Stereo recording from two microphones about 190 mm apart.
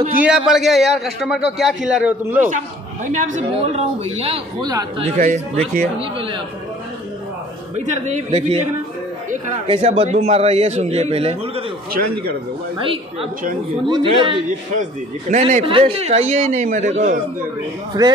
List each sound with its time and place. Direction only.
0.2 s a man's voice: 5° right (ahead or behind)
3.3 s speech: 35° right (ahead or behind)
4.6 s a woman's voice: 20° right (ahead or behind)
5.0 s speech: 40° right (ahead or behind)
5.9 s a woman's voice: 25° right (ahead or behind)
7.7 s speech: 40° right (ahead or behind)
9.7 s speech: 35° right (ahead or behind)
12.0 s a man's voice: 45° right (ahead or behind)
12.7 s a woman's voice: 30° right (ahead or behind)
14.8 s speech: 40° right (ahead or behind)
17.9 s a woman's voice: 20° right (ahead or behind)